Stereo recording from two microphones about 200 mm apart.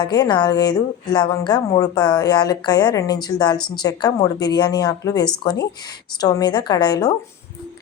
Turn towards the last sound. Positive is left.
turn(degrees=20)  # may be behind; listen again after turning